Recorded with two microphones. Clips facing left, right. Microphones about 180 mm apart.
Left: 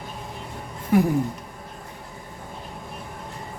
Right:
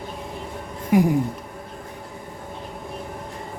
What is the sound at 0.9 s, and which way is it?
Speech, 15° right (ahead or behind).